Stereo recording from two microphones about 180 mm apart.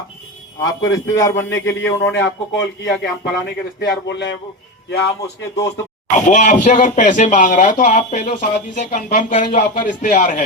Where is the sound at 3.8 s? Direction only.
75° left (ahead or behind).